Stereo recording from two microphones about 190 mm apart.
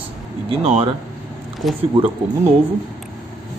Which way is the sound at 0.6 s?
35° right (ahead or behind).